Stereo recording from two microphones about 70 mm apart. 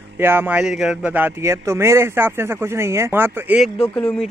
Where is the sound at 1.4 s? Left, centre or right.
Right.